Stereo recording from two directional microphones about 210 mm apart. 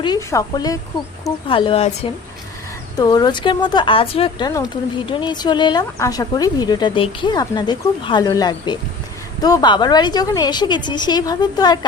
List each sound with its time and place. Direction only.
0.0 s speech: 15° left (ahead or behind)
2.9 s speech: 20° left (ahead or behind)